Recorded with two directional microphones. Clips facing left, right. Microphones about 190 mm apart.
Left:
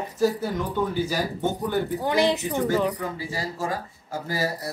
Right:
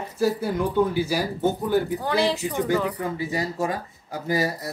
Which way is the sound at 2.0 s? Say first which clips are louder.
Left 1 dB; 20° left (ahead or behind).